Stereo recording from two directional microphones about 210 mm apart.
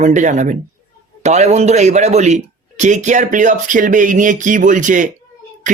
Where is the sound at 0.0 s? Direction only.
35° right (ahead or behind).